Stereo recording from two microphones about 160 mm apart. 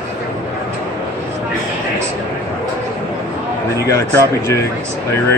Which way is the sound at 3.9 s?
20° left (ahead or behind).